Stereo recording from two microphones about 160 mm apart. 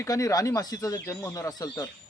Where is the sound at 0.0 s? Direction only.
20° left (ahead or behind).